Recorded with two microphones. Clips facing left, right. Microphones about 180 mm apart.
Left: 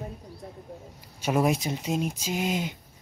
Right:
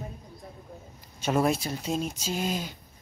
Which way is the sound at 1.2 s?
10° left (ahead or behind).